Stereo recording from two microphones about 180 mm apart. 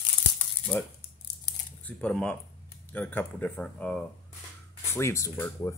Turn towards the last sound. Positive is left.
turn(degrees=15)  # may be behind; listen again after turning